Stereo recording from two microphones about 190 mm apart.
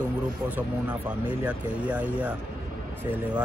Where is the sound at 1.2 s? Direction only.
10° right (ahead or behind).